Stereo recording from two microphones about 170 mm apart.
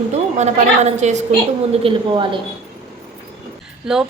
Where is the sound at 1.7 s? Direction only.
30° right (ahead or behind).